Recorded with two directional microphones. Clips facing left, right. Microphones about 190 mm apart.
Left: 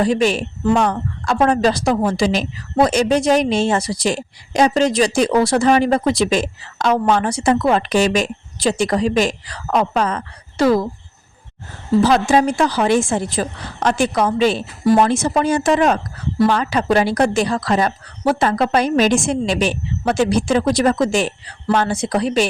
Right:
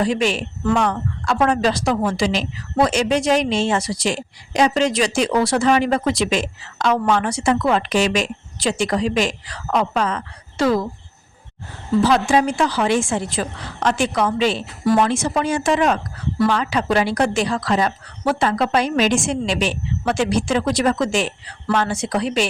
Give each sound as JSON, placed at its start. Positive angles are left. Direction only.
{"t": 0.0, "sound": "speech", "side_deg": 40}
{"t": 12.0, "sound": "speech", "side_deg": 40}